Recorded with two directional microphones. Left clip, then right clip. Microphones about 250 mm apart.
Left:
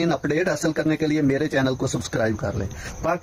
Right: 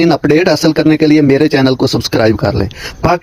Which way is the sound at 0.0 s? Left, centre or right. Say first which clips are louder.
Right 13 dB; right.